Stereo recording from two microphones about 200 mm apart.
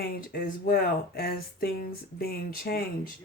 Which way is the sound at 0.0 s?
45° left (ahead or behind).